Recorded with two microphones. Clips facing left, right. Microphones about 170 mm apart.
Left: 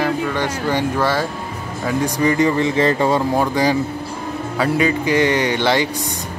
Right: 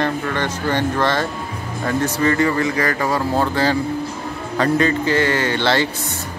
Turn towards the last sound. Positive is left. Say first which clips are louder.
# left 1 dB
turn(degrees=15)  # may be behind; listen again after turning